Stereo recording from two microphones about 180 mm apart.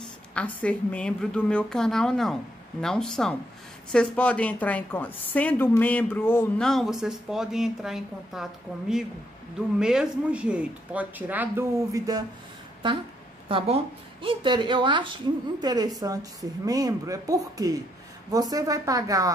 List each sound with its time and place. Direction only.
0.3 s a woman's voice: 5° left (ahead or behind); by 12.3 s 20° right (ahead or behind)
13.5 s a woman's voice: 30° right (ahead or behind)